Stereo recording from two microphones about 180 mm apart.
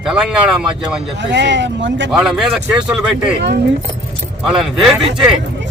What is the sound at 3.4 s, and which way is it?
Speech, 65° right (ahead or behind).